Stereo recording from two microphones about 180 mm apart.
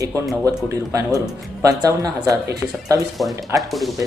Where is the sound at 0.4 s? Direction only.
20° right (ahead or behind).